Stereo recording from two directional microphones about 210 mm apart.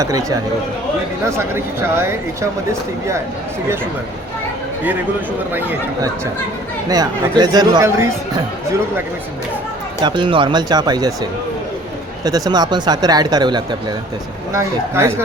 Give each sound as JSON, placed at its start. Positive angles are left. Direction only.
{"t": 0.0, "sound": "speech", "side_deg": -15}
{"t": 5.5, "sound": "speech", "side_deg": -10}
{"t": 10.0, "sound": "speech", "side_deg": -20}